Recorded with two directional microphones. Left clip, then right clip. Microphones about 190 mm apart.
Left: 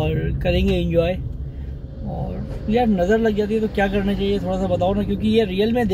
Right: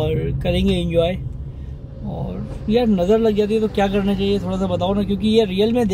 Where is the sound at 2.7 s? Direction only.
20° right (ahead or behind).